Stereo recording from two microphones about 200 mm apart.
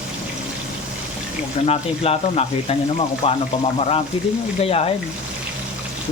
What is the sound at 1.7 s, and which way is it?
Speech, 30° left (ahead or behind).